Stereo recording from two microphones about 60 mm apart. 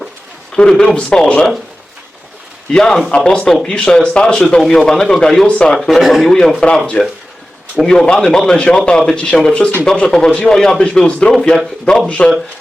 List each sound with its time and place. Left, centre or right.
0.5 s speech: centre
2.7 s speech: centre
5.5 s speech: centre
5.7 s speech: centre
6.0 s speech: centre
6.2 s speech: centre
12.0 s speech: centre